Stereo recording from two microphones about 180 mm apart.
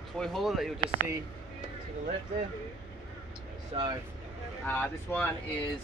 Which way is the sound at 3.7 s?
30° right (ahead or behind).